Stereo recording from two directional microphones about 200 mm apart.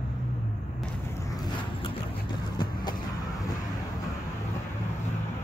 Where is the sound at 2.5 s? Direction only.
20° left (ahead or behind).